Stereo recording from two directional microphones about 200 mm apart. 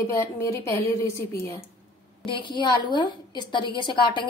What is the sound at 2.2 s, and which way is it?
A woman's voice, 25° left (ahead or behind).